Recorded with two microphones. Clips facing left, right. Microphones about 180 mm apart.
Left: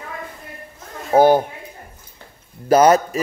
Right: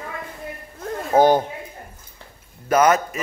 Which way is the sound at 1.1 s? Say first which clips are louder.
Left 2 dB; 10° left (ahead or behind).